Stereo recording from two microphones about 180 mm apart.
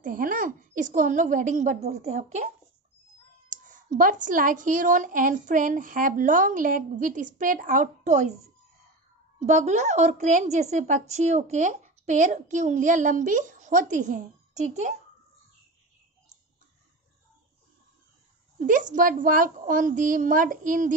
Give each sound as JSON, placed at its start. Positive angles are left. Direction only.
{"t": 0.0, "sound": "a woman's voice", "side_deg": -50}
{"t": 9.4, "sound": "a woman's voice", "side_deg": -40}
{"t": 18.6, "sound": "a woman's voice", "side_deg": -45}